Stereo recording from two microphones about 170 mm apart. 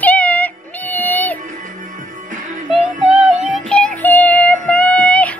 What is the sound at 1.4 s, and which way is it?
Music, 50° right (ahead or behind).